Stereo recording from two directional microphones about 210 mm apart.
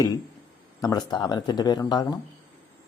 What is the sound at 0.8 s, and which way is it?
Speech, 20° left (ahead or behind).